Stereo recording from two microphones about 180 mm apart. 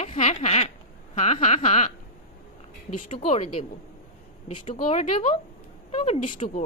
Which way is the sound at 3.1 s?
35° left (ahead or behind).